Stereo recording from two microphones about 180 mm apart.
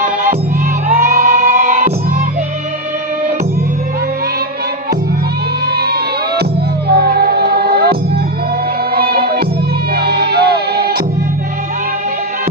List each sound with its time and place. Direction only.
0.0 s music: 50° right (ahead or behind)
1.0 s music: 15° right (ahead or behind)
5.8 s music: 60° right (ahead or behind)